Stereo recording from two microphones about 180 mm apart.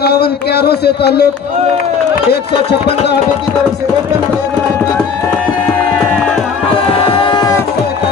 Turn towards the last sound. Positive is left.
turn(degrees=25)  # may be behind; listen again after turning